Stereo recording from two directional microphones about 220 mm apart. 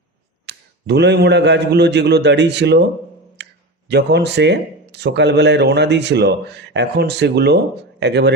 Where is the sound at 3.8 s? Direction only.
50° right (ahead or behind).